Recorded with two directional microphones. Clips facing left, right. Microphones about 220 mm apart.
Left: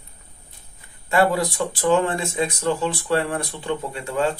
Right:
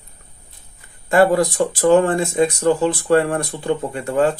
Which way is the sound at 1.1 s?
45° right (ahead or behind).